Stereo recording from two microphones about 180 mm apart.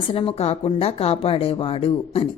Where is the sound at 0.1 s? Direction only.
30° left (ahead or behind).